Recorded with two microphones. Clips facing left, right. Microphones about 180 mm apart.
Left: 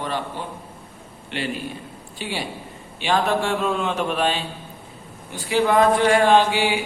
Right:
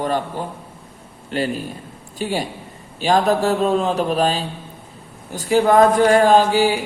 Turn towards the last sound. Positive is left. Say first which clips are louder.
# right 3 dB
turn(degrees=-40)  # may be behind; listen again after turning